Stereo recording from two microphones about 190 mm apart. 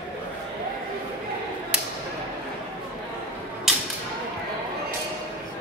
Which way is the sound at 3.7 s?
Centre (ahead or behind).